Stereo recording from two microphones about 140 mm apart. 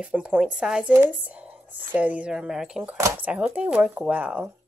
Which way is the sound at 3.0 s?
20° right (ahead or behind).